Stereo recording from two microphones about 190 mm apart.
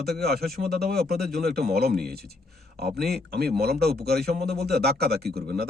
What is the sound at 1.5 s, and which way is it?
Speech, 55° right (ahead or behind).